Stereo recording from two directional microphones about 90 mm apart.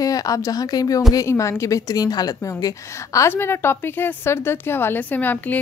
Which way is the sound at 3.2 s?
25° left (ahead or behind).